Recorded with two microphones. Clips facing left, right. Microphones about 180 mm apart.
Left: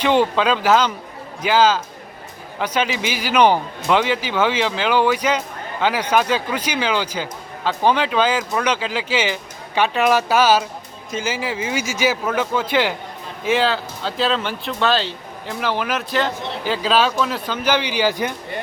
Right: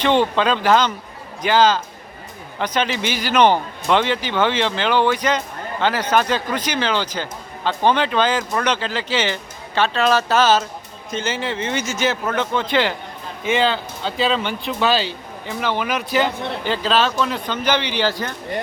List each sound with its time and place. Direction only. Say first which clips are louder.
0.0 s speech: even; 5° left (ahead or behind)